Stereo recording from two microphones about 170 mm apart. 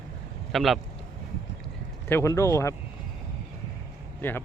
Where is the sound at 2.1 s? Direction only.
15° left (ahead or behind).